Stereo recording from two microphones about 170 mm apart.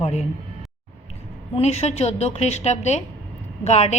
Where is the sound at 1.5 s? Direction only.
40° left (ahead or behind).